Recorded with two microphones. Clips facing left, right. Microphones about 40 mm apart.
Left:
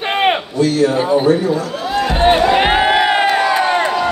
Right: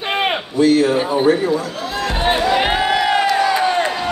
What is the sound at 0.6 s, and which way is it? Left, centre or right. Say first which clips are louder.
Speech: right 3 dB; right.